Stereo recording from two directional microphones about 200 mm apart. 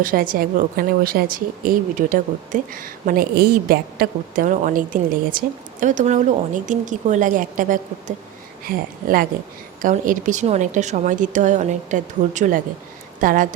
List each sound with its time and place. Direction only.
0.0 s a woman's voice: 45° right (ahead or behind)